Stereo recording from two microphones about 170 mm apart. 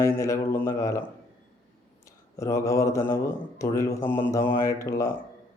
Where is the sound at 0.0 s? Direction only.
15° left (ahead or behind).